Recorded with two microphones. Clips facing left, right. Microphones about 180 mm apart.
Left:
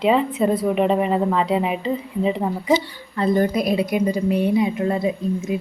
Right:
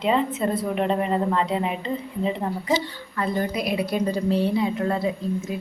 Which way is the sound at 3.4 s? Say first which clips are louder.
Left 6 dB; 45° left (ahead or behind).